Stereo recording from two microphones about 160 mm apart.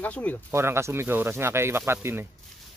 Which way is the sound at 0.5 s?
15° right (ahead or behind).